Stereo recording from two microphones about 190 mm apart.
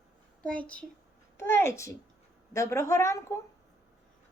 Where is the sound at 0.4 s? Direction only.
5° left (ahead or behind).